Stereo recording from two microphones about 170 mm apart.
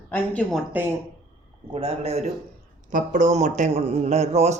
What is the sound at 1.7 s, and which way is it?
Speech, 35° right (ahead or behind).